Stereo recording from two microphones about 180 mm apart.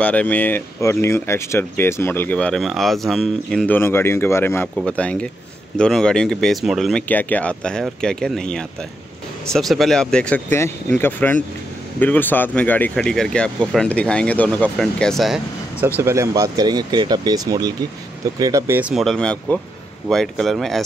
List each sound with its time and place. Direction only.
0.0 s speech: 10° left (ahead or behind)
16.0 s speech: 15° right (ahead or behind); by 20.8 s centre (ahead or behind)